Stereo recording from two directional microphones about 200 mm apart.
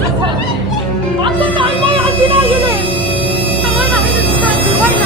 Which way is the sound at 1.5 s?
25° right (ahead or behind).